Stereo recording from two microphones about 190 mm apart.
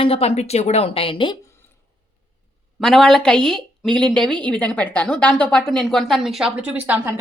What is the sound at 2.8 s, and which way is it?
Speech, centre (ahead or behind).